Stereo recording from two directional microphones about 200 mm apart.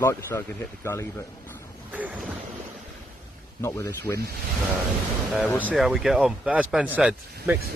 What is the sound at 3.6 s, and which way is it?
Speech, 10° left (ahead or behind).